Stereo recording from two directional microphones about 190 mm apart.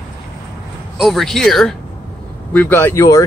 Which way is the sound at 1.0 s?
Centre (ahead or behind).